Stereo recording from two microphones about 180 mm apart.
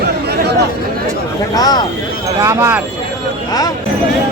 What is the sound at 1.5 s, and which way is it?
Speech, 20° left (ahead or behind).